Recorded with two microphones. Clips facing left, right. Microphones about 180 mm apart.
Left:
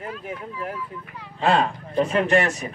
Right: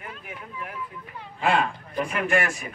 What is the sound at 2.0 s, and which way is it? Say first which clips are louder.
Speech: left 4 dB; 20° left (ahead or behind).